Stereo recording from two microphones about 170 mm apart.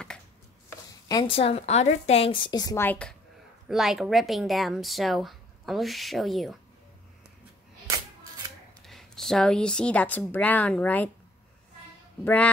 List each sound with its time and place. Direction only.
1.0 s a woman's voice: 25° left (ahead or behind); by 3.2 s 10° left (ahead or behind)
3.6 s a woman's voice: centre (ahead or behind)
8.8 s speech: centre (ahead or behind)